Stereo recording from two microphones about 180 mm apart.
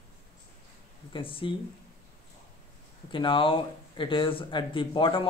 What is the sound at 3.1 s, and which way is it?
Speech, 30° left (ahead or behind).